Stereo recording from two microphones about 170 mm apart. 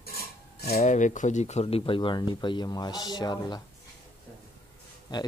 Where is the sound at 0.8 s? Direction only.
45° left (ahead or behind); by 3.6 s 25° left (ahead or behind).